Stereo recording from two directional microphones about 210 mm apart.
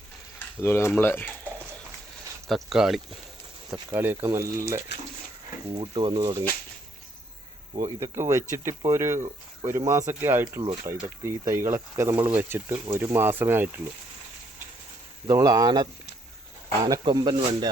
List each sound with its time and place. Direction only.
0.3 s speech: 10° left (ahead or behind)
2.5 s speech: centre (ahead or behind)
3.7 s speech: 15° right (ahead or behind)
5.7 s speech: 20° right (ahead or behind)
7.8 s speech: 20° right (ahead or behind)
15.3 s speech: 15° right (ahead or behind)
17.0 s speech: 20° right (ahead or behind)